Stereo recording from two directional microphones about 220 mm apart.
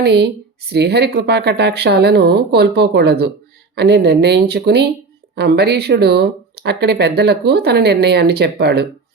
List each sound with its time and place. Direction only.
0.0 s speech: 50° right (ahead or behind)